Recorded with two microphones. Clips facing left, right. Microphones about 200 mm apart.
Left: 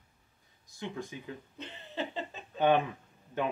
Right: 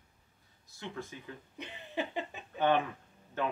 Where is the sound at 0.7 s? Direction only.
15° left (ahead or behind).